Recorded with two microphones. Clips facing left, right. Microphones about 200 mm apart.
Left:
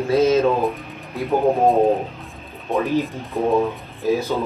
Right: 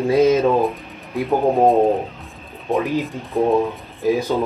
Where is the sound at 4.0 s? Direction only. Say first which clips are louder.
Right 2 dB; 15° right (ahead or behind).